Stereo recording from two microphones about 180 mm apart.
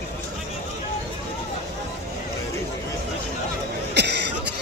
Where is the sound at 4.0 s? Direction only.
70° right (ahead or behind).